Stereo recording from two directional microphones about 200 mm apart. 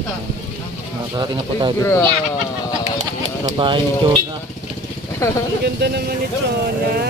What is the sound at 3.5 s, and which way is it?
Speech, 25° right (ahead or behind).